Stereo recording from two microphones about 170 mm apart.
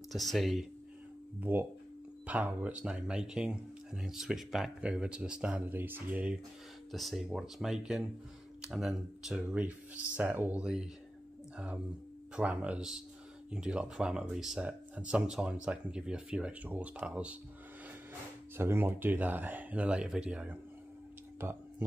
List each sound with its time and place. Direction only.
0.1 s speech: centre (ahead or behind)
1.4 s speech: 10° right (ahead or behind)
18.6 s speech: 15° right (ahead or behind)
21.4 s a sound: 15° right (ahead or behind)